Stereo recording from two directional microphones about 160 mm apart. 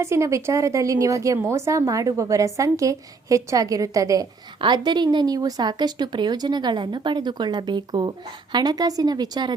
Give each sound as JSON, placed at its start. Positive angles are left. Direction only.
{"t": 0.0, "sound": "a woman's voice", "side_deg": -15}